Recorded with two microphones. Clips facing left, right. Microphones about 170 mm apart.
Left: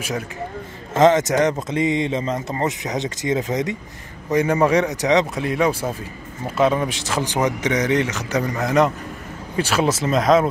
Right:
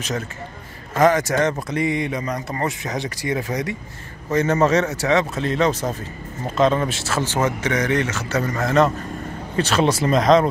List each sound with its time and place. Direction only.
0.9 s speech: 20° left (ahead or behind); by 10.5 s centre (ahead or behind)